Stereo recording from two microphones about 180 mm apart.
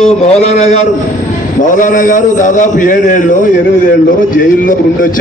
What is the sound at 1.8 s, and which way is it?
A man's voice, 45° left (ahead or behind).